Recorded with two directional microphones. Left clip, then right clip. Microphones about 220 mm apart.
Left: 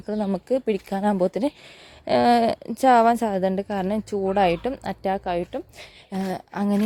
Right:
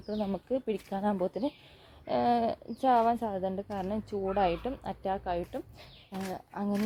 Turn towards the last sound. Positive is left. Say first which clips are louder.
# left 9 dB
turn(degrees=40)  # may be behind; listen again after turning